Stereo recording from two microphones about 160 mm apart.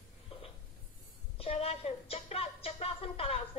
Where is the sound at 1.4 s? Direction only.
40° left (ahead or behind).